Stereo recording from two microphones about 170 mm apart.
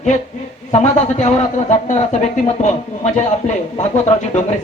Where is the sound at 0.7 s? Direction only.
40° left (ahead or behind).